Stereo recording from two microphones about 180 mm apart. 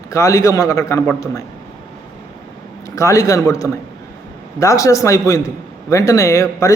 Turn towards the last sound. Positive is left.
turn(degrees=15)  # may be behind; listen again after turning